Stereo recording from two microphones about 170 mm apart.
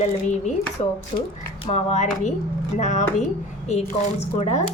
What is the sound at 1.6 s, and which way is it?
Speech, 40° left (ahead or behind).